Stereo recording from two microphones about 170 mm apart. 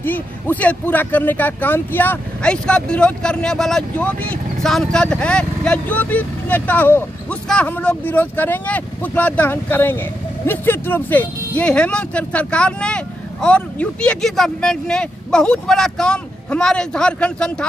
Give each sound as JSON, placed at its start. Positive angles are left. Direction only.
{"t": 0.0, "sound": "speech", "side_deg": 10}